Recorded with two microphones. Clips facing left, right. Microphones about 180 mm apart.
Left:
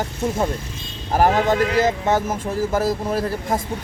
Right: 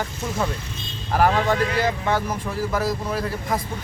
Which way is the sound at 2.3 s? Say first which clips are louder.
Left 3 dB; 45° left (ahead or behind).